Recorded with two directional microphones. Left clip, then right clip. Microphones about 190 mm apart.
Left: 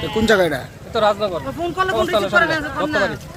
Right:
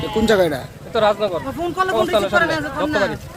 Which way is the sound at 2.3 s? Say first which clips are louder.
Left 3 dB; 65° right (ahead or behind).